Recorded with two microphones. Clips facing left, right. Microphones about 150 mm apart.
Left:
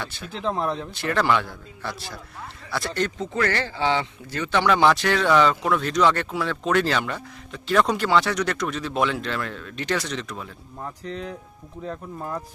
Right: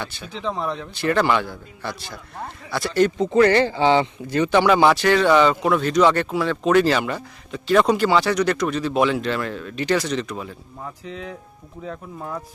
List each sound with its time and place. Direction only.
0.0 s speech: centre (ahead or behind)
3.2 s speech: 20° right (ahead or behind); by 12.4 s centre (ahead or behind)